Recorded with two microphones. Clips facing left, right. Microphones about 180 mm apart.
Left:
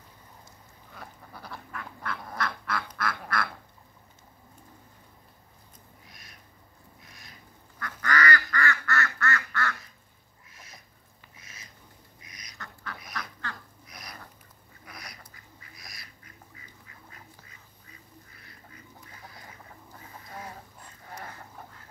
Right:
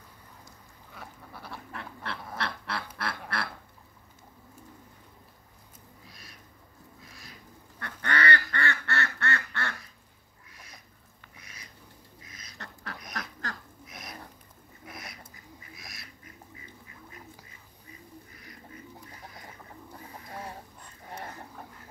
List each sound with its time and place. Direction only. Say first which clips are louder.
0.9 s duck: even; centre (ahead or behind)
1.7 s duck: left 2 dB; 30° right (ahead or behind)
7.8 s duck: left 2 dB; 30° right (ahead or behind)
11.3 s a sound: right 1 dB; 25° left (ahead or behind)
12.2 s duck: even; 15° left (ahead or behind)
12.5 s duck: even; 35° right (ahead or behind)
13.8 s duck: right 3 dB; centre (ahead or behind)